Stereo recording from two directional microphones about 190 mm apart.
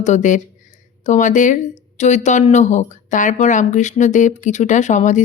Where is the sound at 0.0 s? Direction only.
40° left (ahead or behind).